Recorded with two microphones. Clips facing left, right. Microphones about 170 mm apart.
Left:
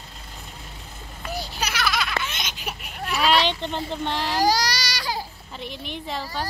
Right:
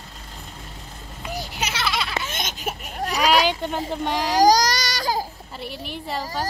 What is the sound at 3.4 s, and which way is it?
Vehicle, 10° right (ahead or behind).